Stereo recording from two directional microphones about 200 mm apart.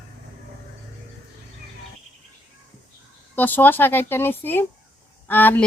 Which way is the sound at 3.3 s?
10° left (ahead or behind).